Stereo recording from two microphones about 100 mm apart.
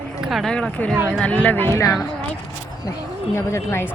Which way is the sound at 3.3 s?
25° left (ahead or behind).